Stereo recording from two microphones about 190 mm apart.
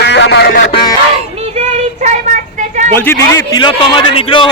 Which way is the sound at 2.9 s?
10° left (ahead or behind).